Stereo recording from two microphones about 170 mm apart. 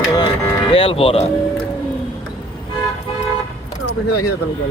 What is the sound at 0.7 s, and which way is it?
Speech, 35° left (ahead or behind).